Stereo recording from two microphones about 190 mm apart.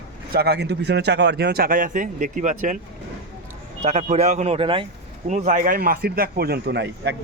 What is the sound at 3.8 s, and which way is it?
Speech, 35° right (ahead or behind).